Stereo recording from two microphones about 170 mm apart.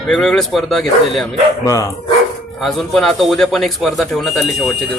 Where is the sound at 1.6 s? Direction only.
20° left (ahead or behind).